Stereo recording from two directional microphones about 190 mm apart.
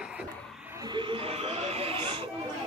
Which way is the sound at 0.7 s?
25° right (ahead or behind).